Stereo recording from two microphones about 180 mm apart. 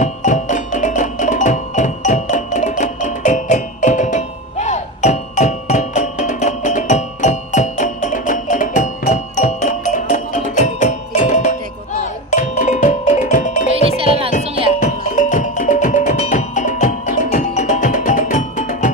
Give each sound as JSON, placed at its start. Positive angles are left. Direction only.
{"t": 0.0, "sound": "music", "side_deg": 45}
{"t": 13.8, "sound": "music", "side_deg": -30}
{"t": 14.8, "sound": "music", "side_deg": 45}